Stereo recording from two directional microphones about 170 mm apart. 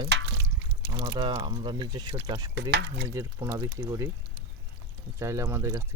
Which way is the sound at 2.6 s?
90° right.